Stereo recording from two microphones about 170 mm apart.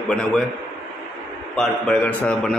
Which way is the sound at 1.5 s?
5° left (ahead or behind).